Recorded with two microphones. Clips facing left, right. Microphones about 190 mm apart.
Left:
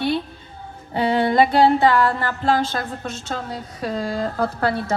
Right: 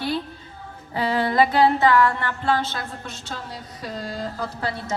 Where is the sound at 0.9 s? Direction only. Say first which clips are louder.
Left 4 dB; 25° left (ahead or behind).